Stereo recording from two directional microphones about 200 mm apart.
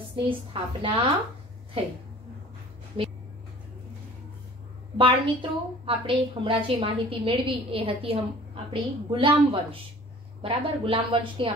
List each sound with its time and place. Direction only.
0.1 s a woman's voice: 25° right (ahead or behind)
4.9 s a woman's voice: 25° right (ahead or behind)